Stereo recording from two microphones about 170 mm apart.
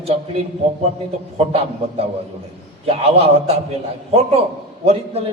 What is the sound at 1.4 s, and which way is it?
A man's voice, 35° right (ahead or behind).